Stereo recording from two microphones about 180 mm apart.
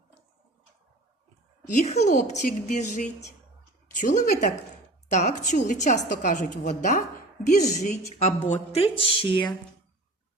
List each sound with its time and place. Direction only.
1.7 s a woman's voice: 40° left (ahead or behind)